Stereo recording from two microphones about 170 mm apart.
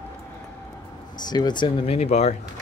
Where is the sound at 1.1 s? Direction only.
25° left (ahead or behind).